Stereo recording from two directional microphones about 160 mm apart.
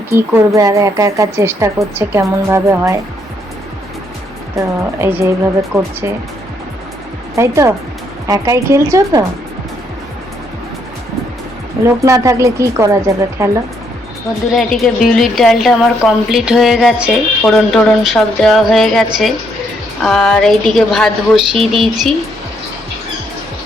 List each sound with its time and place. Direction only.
0.1 s a woman's voice: 15° right (ahead or behind)
4.5 s speech: 15° right (ahead or behind)
7.3 s a woman's voice: 15° right (ahead or behind)
11.8 s a woman's voice: 20° right (ahead or behind)
14.5 s a woman's voice: centre (ahead or behind)